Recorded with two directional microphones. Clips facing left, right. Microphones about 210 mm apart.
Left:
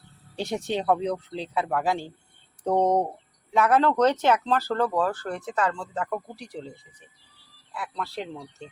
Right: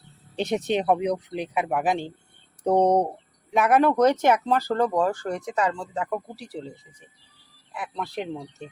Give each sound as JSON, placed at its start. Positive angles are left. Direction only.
{"t": 0.3, "sound": "speech", "side_deg": -20}
{"t": 7.7, "sound": "speech", "side_deg": -15}